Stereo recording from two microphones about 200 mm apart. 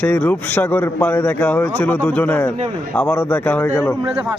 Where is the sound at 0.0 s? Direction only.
5° left (ahead or behind).